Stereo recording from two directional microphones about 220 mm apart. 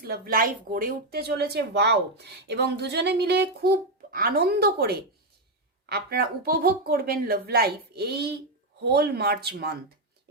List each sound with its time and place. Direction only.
0.0 s speech: 40° right (ahead or behind)